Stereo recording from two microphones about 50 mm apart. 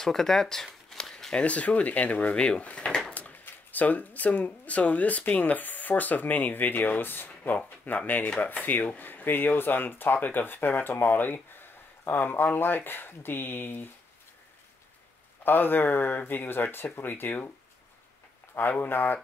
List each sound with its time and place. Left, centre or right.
0.0 s speech: centre
0.8 s shuffling cards: centre
1.3 s speech: left
3.1 s a sound: left
3.4 s speech: left
8.2 s speech: left
15.4 s speech: left
17.1 s speech: left
18.7 s speech: left